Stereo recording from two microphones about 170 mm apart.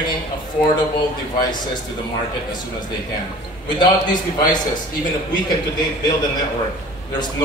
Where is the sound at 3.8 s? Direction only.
25° left (ahead or behind).